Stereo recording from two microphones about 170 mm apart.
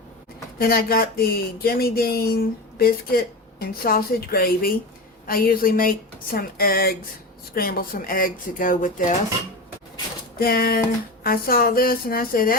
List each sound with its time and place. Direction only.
0.6 s speech: 60° left (ahead or behind)
10.3 s speech: 60° left (ahead or behind)